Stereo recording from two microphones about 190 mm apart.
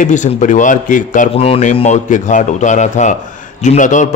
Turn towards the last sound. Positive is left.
turn(degrees=40)  # may be behind; listen again after turning